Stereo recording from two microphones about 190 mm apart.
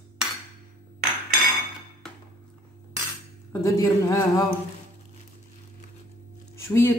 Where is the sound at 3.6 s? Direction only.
15° left (ahead or behind).